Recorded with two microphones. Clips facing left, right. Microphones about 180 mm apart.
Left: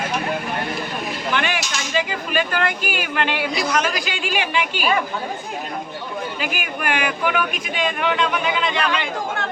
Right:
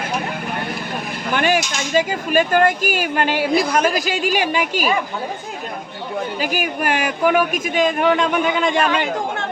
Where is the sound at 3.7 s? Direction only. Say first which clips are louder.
Right 4 dB; 35° right (ahead or behind).